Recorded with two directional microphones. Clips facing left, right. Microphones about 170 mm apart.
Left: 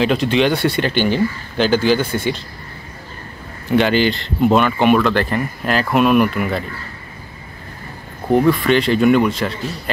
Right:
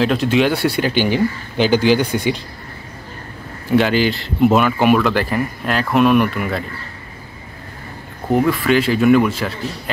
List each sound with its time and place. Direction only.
0.0 s speech: centre (ahead or behind)
3.7 s speech: centre (ahead or behind)
8.3 s speech: 5° right (ahead or behind)